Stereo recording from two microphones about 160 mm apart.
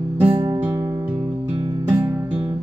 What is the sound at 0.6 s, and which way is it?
Music, 15° right (ahead or behind).